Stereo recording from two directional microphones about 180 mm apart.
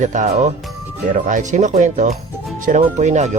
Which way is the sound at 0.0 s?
45° right (ahead or behind).